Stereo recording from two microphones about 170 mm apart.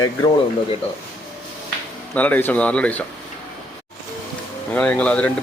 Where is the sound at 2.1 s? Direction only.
10° left (ahead or behind).